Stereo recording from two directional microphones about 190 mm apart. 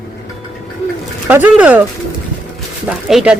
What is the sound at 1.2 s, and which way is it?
Speech, 10° right (ahead or behind).